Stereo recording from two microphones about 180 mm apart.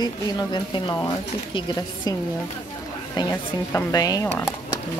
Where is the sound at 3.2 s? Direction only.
20° left (ahead or behind).